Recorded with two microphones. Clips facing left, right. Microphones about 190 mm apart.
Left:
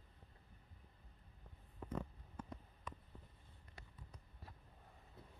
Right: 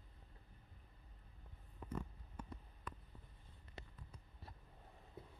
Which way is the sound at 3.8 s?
25° right (ahead or behind).